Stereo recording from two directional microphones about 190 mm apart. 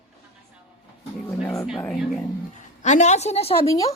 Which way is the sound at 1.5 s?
Centre (ahead or behind).